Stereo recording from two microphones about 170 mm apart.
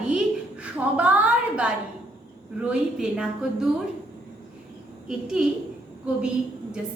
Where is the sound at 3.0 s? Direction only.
5° right (ahead or behind).